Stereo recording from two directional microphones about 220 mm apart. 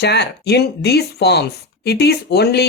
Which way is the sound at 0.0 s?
50° left (ahead or behind).